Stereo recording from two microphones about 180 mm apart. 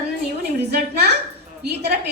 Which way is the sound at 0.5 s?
65° right (ahead or behind).